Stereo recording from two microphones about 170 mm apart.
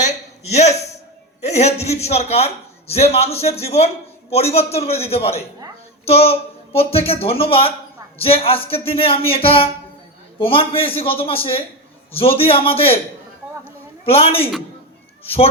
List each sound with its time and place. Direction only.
0.5 s a man's voice: 40° left (ahead or behind)
14.0 s a man's voice: 35° left (ahead or behind)